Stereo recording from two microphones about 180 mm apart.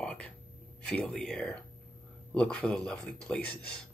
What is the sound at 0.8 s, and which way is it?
Speech, 5° left (ahead or behind).